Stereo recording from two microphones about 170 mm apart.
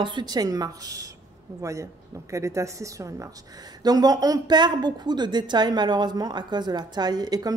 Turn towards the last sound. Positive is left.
turn(degrees=-20)  # may be behind; listen again after turning